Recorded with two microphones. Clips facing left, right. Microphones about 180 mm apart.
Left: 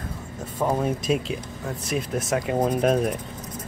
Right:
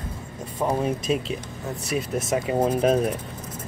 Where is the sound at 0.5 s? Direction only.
5° right (ahead or behind).